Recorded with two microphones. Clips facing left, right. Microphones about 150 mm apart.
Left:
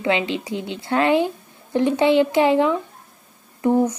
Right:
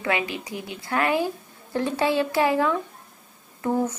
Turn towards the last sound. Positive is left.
turn(degrees=20)  # may be behind; listen again after turning